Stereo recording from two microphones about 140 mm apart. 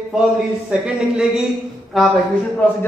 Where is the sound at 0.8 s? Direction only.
5° right (ahead or behind).